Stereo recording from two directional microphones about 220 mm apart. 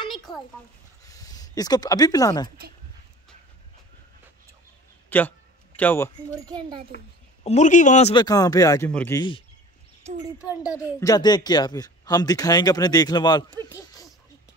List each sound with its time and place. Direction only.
0.3 s speech: 20° left (ahead or behind)
5.1 s speech: 10° left (ahead or behind)
6.9 s a woman's voice: 50° left (ahead or behind)
7.4 s speech: 35° left (ahead or behind); by 9.2 s 10° left (ahead or behind)
10.7 s speech: 15° left (ahead or behind)
13.7 s a sound: 15° left (ahead or behind)